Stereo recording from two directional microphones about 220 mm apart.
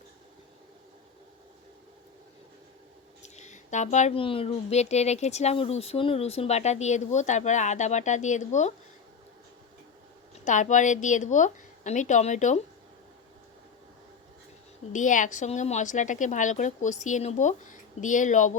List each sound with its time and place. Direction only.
3.2 s a woman's voice: 30° left (ahead or behind)
10.4 s a woman's voice: 35° left (ahead or behind)
14.9 s a woman's voice: 35° left (ahead or behind)